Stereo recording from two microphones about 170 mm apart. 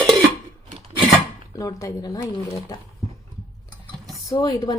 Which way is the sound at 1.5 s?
20° left (ahead or behind).